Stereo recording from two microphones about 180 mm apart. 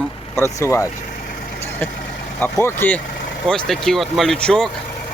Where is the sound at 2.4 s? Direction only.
10° left (ahead or behind).